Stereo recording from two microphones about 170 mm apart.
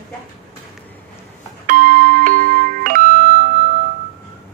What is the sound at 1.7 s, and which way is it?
Music, 55° right (ahead or behind).